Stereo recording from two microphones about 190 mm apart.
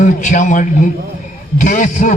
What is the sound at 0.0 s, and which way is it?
A man's voice, 40° left (ahead or behind).